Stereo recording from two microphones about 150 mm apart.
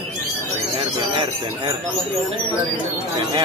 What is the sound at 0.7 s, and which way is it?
Speech, 35° right (ahead or behind).